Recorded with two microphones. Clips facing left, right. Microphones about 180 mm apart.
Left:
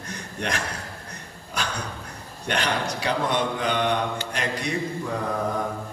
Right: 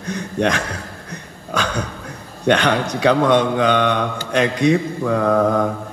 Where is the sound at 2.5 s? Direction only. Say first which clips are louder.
Right 9 dB; 75° right (ahead or behind).